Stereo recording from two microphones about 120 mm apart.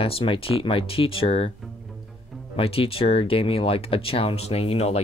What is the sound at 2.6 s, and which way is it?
Speech, 50° left (ahead or behind).